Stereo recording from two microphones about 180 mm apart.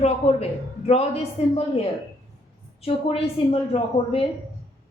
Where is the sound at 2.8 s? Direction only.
30° left (ahead or behind).